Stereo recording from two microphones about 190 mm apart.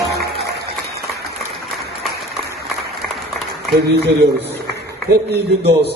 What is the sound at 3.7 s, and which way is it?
A man's voice, 60° right (ahead or behind).